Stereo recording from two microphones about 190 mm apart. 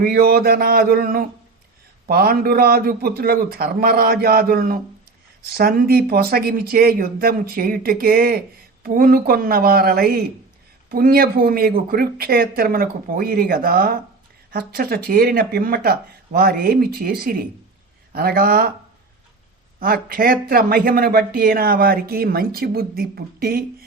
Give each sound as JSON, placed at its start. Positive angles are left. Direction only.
{"t": 0.0, "sound": "speech", "side_deg": -50}
{"t": 19.8, "sound": "speech", "side_deg": -50}